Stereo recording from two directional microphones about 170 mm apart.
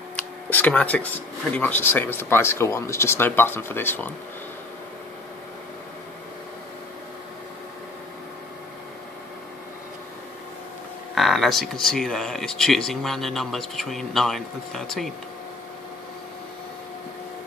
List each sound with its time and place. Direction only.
0.1 s speech: 10° left (ahead or behind)
11.1 s speech: centre (ahead or behind)